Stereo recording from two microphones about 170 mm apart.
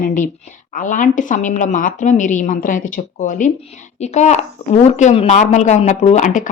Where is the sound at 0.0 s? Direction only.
50° left (ahead or behind).